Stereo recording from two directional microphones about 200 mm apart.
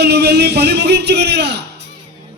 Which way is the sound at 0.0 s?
55° right (ahead or behind).